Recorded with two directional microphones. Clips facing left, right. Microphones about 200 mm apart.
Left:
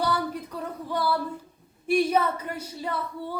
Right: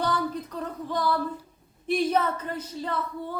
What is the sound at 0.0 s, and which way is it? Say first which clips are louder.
Female singing: even; 10° left (ahead or behind).